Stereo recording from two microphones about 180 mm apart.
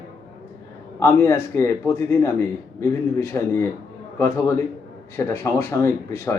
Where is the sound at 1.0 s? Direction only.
15° left (ahead or behind).